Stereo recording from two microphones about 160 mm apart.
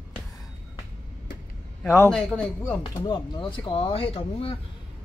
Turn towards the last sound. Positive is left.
turn(degrees=35)  # may be behind; listen again after turning